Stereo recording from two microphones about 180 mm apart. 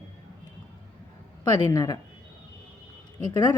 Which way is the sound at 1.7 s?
20° left (ahead or behind).